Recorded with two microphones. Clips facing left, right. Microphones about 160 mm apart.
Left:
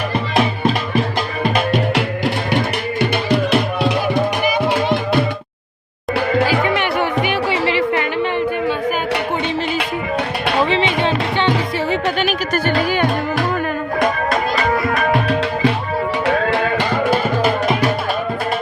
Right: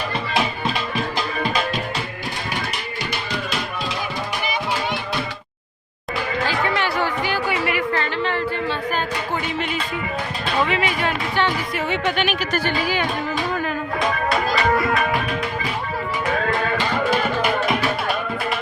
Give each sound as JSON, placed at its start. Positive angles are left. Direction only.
{"t": 0.3, "sound": "music", "side_deg": 50}
{"t": 1.5, "sound": "music", "side_deg": 65}
{"t": 6.4, "sound": "music", "side_deg": 15}
{"t": 7.9, "sound": "a sound", "side_deg": 15}
{"t": 10.7, "sound": "music", "side_deg": 25}
{"t": 11.9, "sound": "music", "side_deg": 40}
{"t": 14.0, "sound": "music", "side_deg": 45}
{"t": 15.3, "sound": "music", "side_deg": 75}
{"t": 17.1, "sound": "music", "side_deg": 30}